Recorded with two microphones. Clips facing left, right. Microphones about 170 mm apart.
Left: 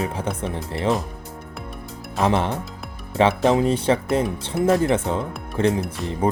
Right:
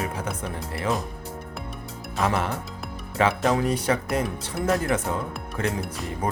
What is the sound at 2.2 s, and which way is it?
Speech, 25° left (ahead or behind).